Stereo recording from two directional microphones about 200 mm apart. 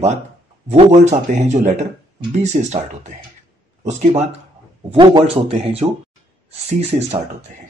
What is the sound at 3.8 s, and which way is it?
Speech, 35° right (ahead or behind).